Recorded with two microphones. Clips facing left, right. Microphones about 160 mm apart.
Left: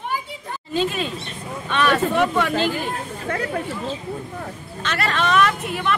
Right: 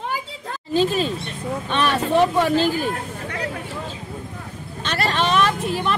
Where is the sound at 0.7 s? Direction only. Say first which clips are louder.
Right 4 dB; 35° right (ahead or behind).